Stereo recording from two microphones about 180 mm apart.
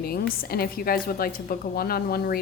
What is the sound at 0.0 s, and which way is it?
A woman's voice, 60° left (ahead or behind).